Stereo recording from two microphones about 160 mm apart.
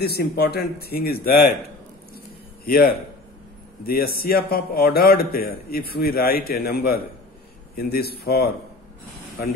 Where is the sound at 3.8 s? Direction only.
70° left (ahead or behind).